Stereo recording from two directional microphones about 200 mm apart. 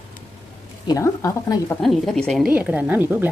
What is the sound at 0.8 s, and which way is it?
Speech, 15° left (ahead or behind).